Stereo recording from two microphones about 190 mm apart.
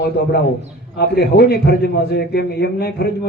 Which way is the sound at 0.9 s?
55° left (ahead or behind).